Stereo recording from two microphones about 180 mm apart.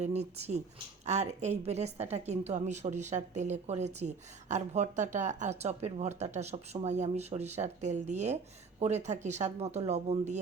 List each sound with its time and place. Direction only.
0.0 s a woman's voice: 35° right (ahead or behind)